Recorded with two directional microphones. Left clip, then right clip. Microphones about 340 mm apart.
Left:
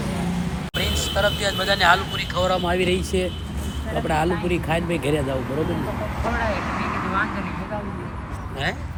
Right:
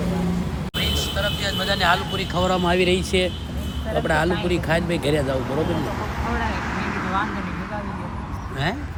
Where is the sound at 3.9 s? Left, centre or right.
Centre.